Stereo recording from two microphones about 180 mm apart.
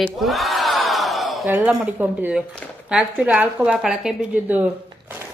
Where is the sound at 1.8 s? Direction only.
10° right (ahead or behind).